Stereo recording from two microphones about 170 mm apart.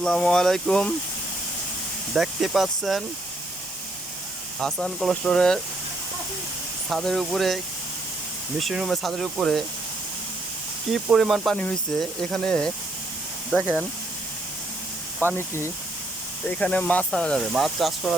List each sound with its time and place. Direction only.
0.0 s speech: 5° left (ahead or behind)
2.1 s speech: centre (ahead or behind)
4.6 s speech: 5° left (ahead or behind)
6.9 s speech: centre (ahead or behind)
10.9 s speech: centre (ahead or behind)
13.5 s speech: 5° right (ahead or behind)
15.4 s speech: 15° left (ahead or behind); by 18.1 s centre (ahead or behind)